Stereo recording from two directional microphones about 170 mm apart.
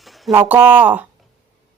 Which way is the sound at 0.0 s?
Centre (ahead or behind).